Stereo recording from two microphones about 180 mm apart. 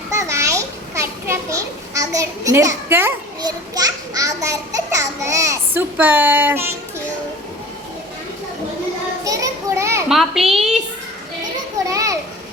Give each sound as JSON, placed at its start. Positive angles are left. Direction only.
{"t": 0.1, "sound": "children playing", "side_deg": -15}
{"t": 3.4, "sound": "a child's voice", "side_deg": -20}
{"t": 9.2, "sound": "children playing", "side_deg": -20}
{"t": 10.1, "sound": "a child's voice", "side_deg": 0}
{"t": 11.9, "sound": "children playing", "side_deg": -20}